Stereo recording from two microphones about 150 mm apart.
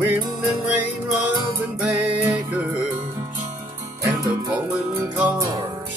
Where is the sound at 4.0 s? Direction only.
20° right (ahead or behind).